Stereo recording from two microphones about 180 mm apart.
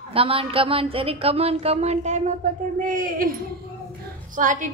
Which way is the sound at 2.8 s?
50° right (ahead or behind).